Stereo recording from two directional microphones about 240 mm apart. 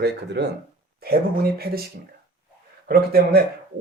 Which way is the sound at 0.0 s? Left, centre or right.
Right.